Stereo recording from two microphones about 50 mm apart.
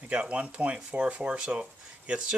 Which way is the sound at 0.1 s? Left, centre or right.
Right.